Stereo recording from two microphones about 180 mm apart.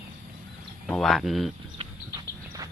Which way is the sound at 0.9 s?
Centre (ahead or behind).